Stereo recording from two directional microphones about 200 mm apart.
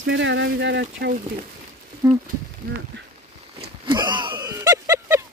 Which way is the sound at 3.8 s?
20° right (ahead or behind).